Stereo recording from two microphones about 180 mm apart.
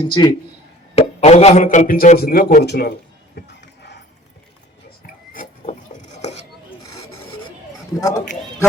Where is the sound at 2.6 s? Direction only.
65° left (ahead or behind).